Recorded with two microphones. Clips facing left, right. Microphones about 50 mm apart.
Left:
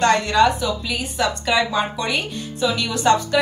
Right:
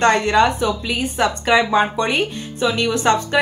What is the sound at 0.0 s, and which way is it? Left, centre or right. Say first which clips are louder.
A woman's voice: right 1 dB; right.